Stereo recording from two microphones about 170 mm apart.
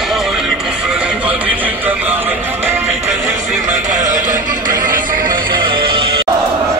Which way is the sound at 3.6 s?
45° right (ahead or behind).